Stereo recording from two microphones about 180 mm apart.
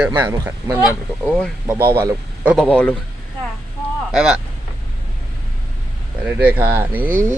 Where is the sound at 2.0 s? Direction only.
10° right (ahead or behind).